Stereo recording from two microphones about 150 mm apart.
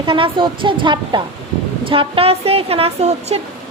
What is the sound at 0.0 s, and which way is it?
A woman's voice, 35° right (ahead or behind).